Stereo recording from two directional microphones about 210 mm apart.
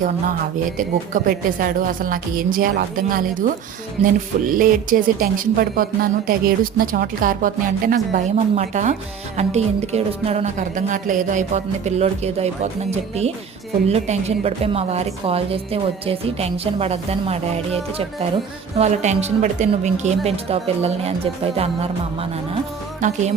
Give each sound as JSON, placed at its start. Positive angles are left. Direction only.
{"t": 0.8, "sound": "a woman's voice", "side_deg": -40}
{"t": 18.8, "sound": "a woman's voice", "side_deg": -30}